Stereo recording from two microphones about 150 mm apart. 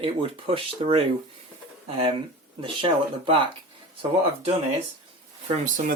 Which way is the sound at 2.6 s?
35° right (ahead or behind).